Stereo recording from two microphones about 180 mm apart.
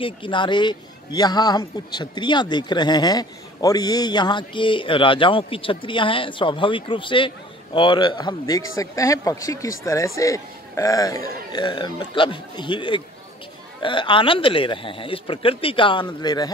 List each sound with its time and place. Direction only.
0.0 s a man's voice: 25° left (ahead or behind)